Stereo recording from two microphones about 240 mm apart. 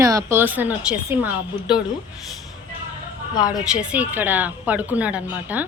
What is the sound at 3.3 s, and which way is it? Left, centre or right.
Speech, centre.